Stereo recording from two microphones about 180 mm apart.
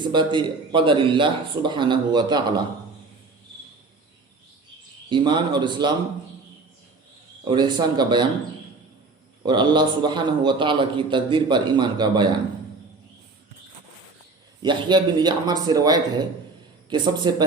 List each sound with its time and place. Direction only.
0.0 s a man's voice: 25° right (ahead or behind)
5.0 s a man's voice: 25° right (ahead or behind)
7.4 s a man's voice: 25° right (ahead or behind)
9.4 s a man's voice: 25° right (ahead or behind)
14.6 s a man's voice: 25° right (ahead or behind)